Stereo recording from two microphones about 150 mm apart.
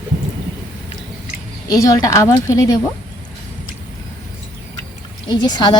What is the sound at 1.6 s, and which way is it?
Speech, 25° left (ahead or behind).